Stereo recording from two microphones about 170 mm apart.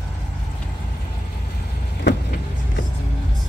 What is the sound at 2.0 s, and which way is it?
Vehicle, 70° left (ahead or behind).